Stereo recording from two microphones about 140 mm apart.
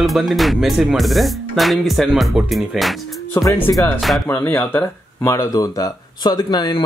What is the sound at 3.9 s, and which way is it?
Speech, centre (ahead or behind).